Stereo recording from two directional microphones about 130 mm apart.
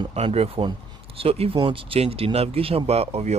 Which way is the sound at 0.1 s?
50° right (ahead or behind).